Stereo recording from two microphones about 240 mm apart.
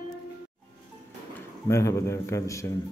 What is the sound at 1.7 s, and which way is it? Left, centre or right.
A man's voice, centre.